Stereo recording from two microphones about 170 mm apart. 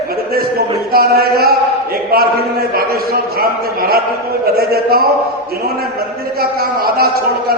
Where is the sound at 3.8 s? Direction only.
60° right (ahead or behind).